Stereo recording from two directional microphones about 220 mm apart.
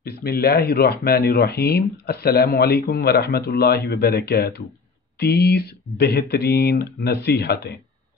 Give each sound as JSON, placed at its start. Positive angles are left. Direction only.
{"t": 0.0, "sound": "speech", "side_deg": 45}